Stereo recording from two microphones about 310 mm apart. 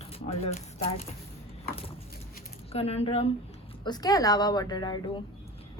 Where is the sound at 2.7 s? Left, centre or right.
Centre.